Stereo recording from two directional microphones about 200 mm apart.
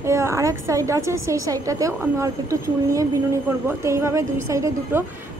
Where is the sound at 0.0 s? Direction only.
15° right (ahead or behind).